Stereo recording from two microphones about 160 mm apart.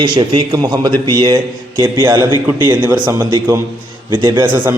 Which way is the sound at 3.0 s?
20° right (ahead or behind).